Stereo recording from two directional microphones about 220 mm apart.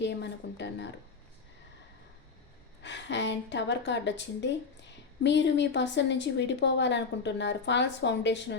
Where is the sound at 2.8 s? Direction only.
55° left (ahead or behind).